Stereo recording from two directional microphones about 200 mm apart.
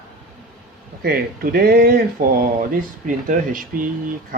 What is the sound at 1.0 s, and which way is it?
Speech, 50° right (ahead or behind).